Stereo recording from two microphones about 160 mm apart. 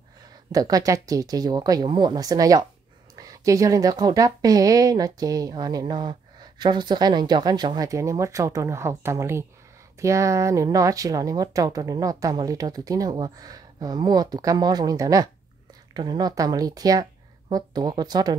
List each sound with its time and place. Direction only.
0.5 s speech: 25° right (ahead or behind)